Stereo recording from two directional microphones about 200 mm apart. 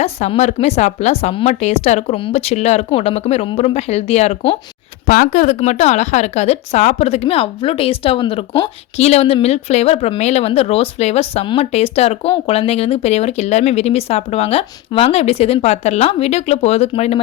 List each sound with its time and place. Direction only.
0.0 s speech: 30° left (ahead or behind)
5.0 s speech: 45° left (ahead or behind)